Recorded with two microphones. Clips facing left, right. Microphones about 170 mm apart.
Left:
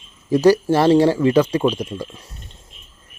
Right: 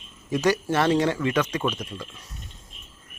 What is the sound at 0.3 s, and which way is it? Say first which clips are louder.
Speech: left 9 dB; 35° left (ahead or behind).